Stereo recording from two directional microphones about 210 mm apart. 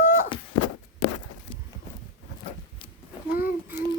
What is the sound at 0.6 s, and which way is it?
Walk, 90° left.